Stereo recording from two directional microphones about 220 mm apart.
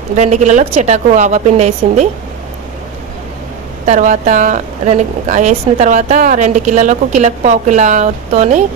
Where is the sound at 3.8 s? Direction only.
35° right (ahead or behind).